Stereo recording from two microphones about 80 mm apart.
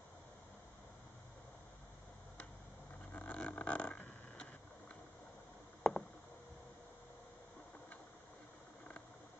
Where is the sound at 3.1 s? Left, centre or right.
Centre.